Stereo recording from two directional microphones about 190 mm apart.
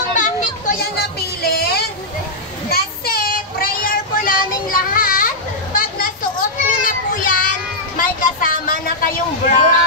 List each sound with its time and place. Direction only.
0.1 s children playing: 40° left (ahead or behind)
0.9 s music: 55° left (ahead or behind)
2.7 s child singing: 50° left (ahead or behind)
8.0 s a sound: 45° left (ahead or behind)